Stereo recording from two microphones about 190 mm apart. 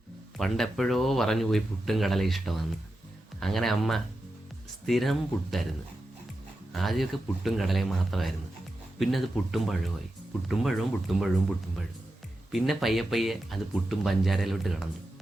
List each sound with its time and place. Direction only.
0.3 s speech: centre (ahead or behind)
6.7 s speech: centre (ahead or behind)
12.5 s speech: centre (ahead or behind)